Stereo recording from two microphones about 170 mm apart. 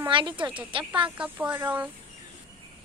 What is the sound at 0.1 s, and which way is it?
Speech, 30° right (ahead or behind).